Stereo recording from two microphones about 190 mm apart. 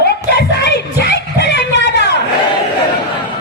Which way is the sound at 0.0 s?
60° left (ahead or behind).